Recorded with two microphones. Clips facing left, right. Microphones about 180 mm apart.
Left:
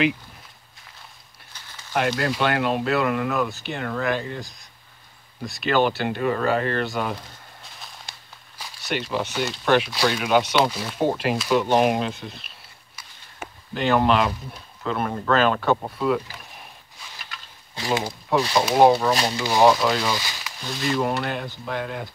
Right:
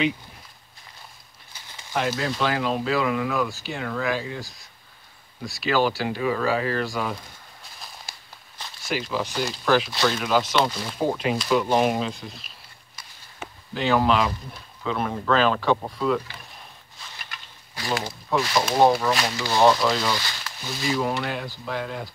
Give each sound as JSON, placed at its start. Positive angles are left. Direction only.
{"t": 1.5, "sound": "a sound", "side_deg": -10}
{"t": 2.0, "sound": "speech", "side_deg": 0}
{"t": 5.4, "sound": "speech", "side_deg": 0}
{"t": 8.1, "sound": "a sound", "side_deg": -5}
{"t": 8.5, "sound": "a sound", "side_deg": 10}
{"t": 8.9, "sound": "speech", "side_deg": 0}
{"t": 9.9, "sound": "speech", "side_deg": 10}
{"t": 17.7, "sound": "speech", "side_deg": 20}
{"t": 19.0, "sound": "speech", "side_deg": 30}
{"t": 19.4, "sound": "speech", "side_deg": 10}
{"t": 20.6, "sound": "speech", "side_deg": 0}